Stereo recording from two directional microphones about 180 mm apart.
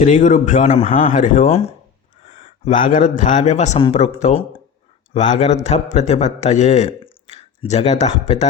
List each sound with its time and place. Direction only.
0.0 s a man's voice: 45° left (ahead or behind)
1.2 s speech: 45° left (ahead or behind)
2.2 s a sound: 30° left (ahead or behind)
2.6 s a man's voice: 45° left (ahead or behind)